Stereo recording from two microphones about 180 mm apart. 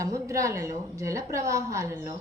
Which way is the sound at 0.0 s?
15° right (ahead or behind).